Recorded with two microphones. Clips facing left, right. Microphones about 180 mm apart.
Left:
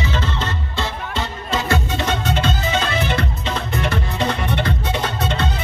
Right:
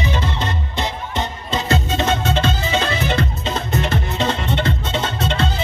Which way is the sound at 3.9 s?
25° right (ahead or behind).